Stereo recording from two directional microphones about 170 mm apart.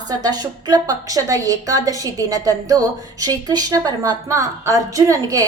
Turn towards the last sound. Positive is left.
turn(degrees=-20)  # may be behind; listen again after turning